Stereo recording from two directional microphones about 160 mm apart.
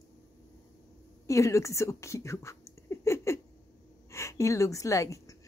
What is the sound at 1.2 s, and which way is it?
A woman's voice, 20° left (ahead or behind).